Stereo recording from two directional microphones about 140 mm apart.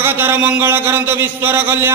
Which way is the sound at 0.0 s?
15° right (ahead or behind).